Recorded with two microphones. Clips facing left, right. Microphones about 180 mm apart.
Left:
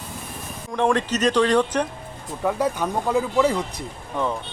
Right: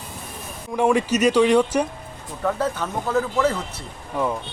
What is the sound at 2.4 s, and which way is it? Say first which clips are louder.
Speech: left 1 dB; 15° left (ahead or behind).